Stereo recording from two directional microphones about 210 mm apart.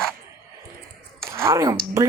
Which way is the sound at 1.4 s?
15° right (ahead or behind).